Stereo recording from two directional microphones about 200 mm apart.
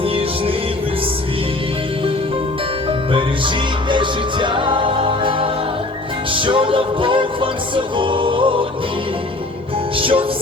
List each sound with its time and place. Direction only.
3.1 s music: 25° right (ahead or behind)
10.0 s music: 25° right (ahead or behind)